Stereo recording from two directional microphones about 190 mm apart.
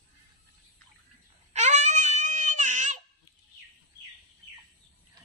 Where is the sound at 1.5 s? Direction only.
35° right (ahead or behind).